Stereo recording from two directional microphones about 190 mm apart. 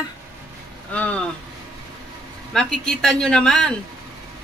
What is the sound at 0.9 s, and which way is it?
Speech, 5° left (ahead or behind).